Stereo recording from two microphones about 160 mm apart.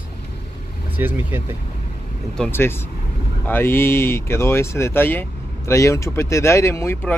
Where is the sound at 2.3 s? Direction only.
10° left (ahead or behind).